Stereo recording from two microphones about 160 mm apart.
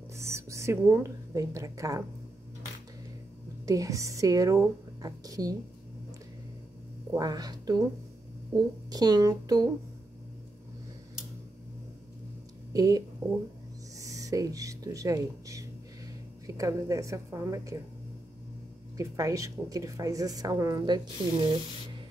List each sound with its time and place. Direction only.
0.2 s speech: 15° right (ahead or behind)
3.6 s speech: 20° right (ahead or behind)
7.1 s speech: 25° right (ahead or behind)
12.7 s speech: 20° right (ahead or behind)
18.9 s speech: 20° right (ahead or behind)